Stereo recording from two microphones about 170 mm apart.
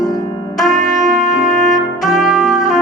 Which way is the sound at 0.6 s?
Centre (ahead or behind).